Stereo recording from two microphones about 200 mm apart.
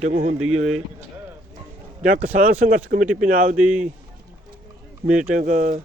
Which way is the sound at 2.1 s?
45° right (ahead or behind).